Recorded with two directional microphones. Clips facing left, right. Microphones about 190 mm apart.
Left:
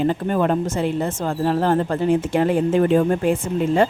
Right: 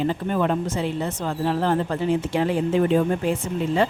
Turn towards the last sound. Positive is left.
turn(degrees=50)  # may be behind; listen again after turning